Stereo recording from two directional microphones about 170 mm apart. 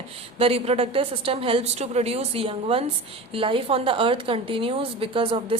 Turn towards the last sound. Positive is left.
turn(degrees=-30)  # may be behind; listen again after turning